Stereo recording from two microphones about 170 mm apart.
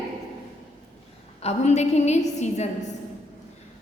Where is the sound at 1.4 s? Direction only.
40° left (ahead or behind).